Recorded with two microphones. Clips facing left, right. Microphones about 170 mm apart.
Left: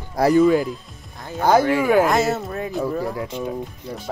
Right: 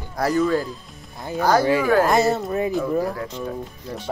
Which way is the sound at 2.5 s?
10° right (ahead or behind).